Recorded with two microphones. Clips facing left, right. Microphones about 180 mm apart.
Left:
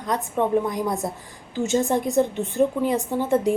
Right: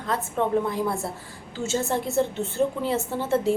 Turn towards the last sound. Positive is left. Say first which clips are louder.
# left 3 dB
turn(degrees=15)  # may be behind; listen again after turning